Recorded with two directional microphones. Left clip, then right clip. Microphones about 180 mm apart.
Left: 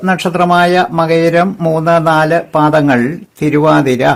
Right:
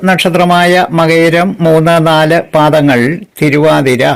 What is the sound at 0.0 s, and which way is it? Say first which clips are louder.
Speech: right 4 dB; 15° right (ahead or behind).